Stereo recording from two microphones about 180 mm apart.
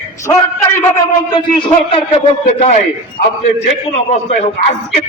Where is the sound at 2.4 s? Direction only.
40° left (ahead or behind).